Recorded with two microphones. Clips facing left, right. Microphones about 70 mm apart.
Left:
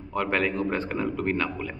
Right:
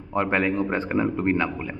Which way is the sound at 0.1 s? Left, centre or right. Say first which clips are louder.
Right 3 dB; right.